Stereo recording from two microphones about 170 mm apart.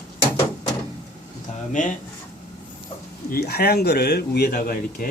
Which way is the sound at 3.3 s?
65° left (ahead or behind).